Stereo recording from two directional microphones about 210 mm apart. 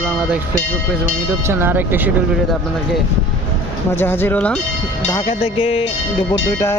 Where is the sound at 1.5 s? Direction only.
10° right (ahead or behind).